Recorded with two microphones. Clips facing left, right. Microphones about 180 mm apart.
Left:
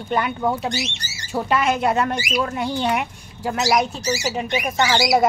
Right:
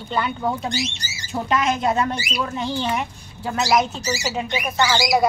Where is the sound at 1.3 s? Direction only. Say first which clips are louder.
Left 1 dB; 5° left (ahead or behind).